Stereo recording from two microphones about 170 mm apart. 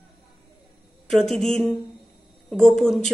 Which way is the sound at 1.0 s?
5° left (ahead or behind).